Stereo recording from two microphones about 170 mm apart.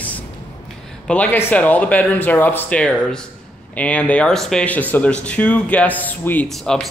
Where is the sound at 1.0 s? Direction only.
10° left (ahead or behind).